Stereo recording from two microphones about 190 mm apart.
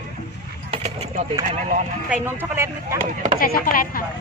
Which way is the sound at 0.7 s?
30° right (ahead or behind).